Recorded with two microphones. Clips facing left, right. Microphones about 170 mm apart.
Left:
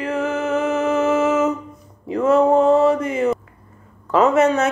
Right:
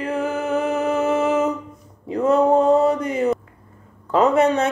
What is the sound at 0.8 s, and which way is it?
Music, 60° right (ahead or behind).